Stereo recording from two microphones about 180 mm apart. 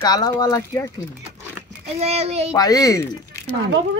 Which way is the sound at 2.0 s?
35° right (ahead or behind).